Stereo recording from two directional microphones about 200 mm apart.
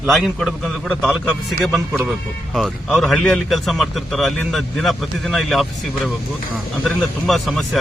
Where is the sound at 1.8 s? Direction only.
10° right (ahead or behind).